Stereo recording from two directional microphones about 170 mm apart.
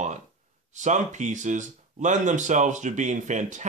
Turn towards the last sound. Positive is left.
turn(degrees=-45)  # may be behind; listen again after turning